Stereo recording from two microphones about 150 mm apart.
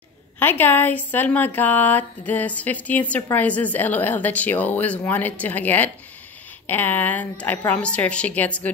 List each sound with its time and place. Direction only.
0.4 s a woman's voice: 15° left (ahead or behind)